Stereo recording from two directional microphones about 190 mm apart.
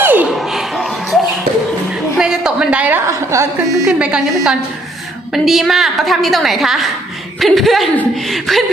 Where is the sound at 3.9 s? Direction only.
5° right (ahead or behind).